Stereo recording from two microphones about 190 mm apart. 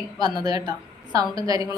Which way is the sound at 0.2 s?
20° right (ahead or behind).